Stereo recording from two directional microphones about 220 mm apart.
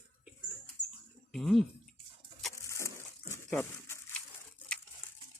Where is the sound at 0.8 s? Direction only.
30° left (ahead or behind).